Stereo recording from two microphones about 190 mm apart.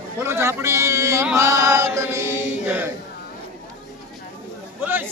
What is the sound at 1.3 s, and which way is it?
Chant, 15° right (ahead or behind).